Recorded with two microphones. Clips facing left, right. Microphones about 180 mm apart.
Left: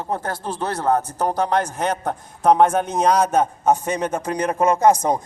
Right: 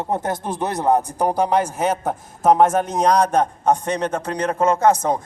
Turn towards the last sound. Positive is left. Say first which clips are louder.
# left 1 dB
turn(degrees=15)  # may be behind; listen again after turning